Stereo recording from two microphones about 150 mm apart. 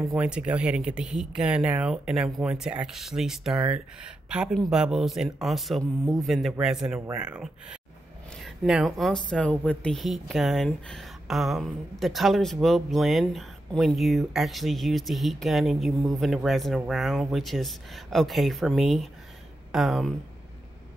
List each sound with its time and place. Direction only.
0.1 s speech: 5° right (ahead or behind)
8.6 s speech: centre (ahead or behind)